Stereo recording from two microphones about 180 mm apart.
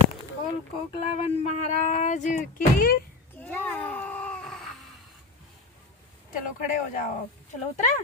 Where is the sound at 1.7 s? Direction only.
40° left (ahead or behind).